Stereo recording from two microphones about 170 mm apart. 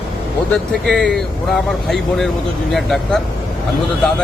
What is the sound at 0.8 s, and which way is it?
Speech, centre (ahead or behind).